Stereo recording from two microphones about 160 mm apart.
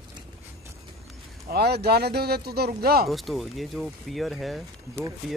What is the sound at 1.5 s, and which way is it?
Speech, 90° right.